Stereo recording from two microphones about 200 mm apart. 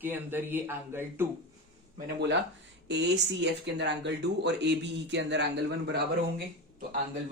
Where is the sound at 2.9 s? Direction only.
60° right (ahead or behind).